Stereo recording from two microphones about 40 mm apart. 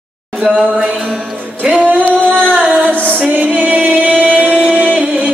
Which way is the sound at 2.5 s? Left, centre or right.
Right.